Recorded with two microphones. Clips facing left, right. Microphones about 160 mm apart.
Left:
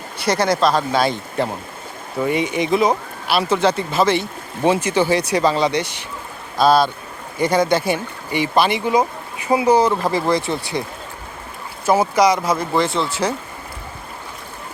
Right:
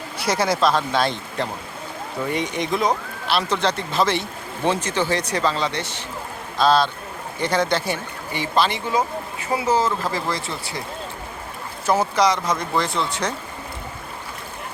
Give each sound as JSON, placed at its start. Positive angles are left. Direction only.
{"t": 0.3, "sound": "speech", "side_deg": -5}
{"t": 11.9, "sound": "speech", "side_deg": 10}